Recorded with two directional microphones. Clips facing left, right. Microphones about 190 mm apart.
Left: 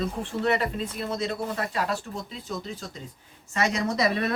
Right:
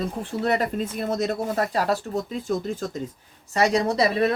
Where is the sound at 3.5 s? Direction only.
35° right (ahead or behind).